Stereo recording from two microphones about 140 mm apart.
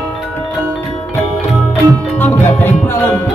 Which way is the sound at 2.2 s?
15° left (ahead or behind).